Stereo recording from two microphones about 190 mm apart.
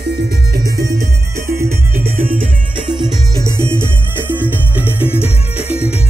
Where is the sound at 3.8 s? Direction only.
10° right (ahead or behind).